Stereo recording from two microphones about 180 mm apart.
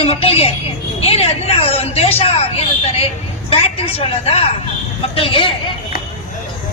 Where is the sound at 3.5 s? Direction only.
35° left (ahead or behind).